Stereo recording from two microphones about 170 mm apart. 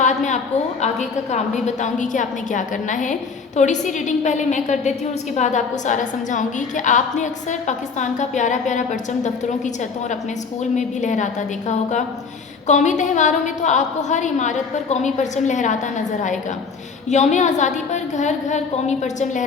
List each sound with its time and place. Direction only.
0.0 s a sound: 45° left (ahead or behind)
0.8 s a woman's voice: 45° left (ahead or behind)
10.8 s a woman's voice: 45° left (ahead or behind)
12.6 s a woman's voice: 45° left (ahead or behind)
17.1 s a woman's voice: 45° left (ahead or behind)